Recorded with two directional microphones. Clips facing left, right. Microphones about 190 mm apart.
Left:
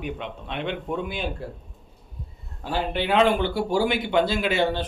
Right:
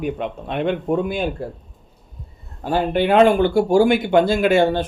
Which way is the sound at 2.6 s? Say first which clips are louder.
Right 7 dB; 50° right (ahead or behind).